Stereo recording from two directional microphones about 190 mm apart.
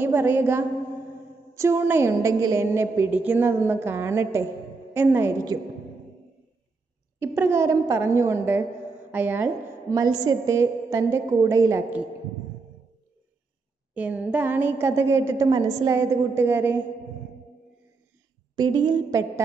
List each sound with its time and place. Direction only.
0.0 s a woman's voice: 10° right (ahead or behind)
7.2 s a woman's voice: 15° right (ahead or behind)
13.9 s a woman's voice: 10° right (ahead or behind)
18.6 s a woman's voice: 20° right (ahead or behind)